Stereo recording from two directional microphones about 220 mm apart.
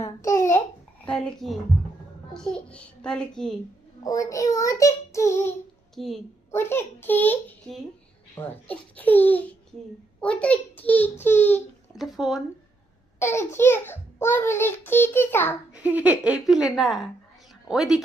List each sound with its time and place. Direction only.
0.0 s babbling: 15° left (ahead or behind)
1.0 s a child's voice: 5° left (ahead or behind)
4.0 s a child's voice: 15° left (ahead or behind)
5.9 s a woman's voice: centre (ahead or behind)
13.1 s a child's voice: 10° left (ahead or behind)
15.7 s a child's voice: 5° right (ahead or behind)